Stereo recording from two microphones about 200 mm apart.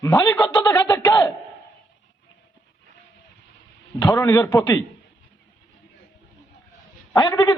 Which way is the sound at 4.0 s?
15° left (ahead or behind).